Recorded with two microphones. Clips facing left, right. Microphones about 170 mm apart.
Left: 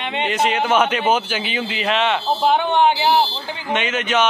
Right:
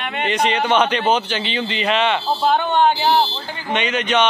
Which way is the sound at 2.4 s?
15° left (ahead or behind).